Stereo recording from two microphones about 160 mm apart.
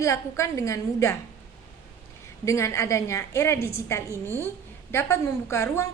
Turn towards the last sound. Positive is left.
turn(degrees=15)  # may be behind; listen again after turning